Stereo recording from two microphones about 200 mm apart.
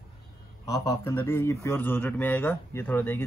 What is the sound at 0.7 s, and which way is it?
A man's voice, 15° left (ahead or behind).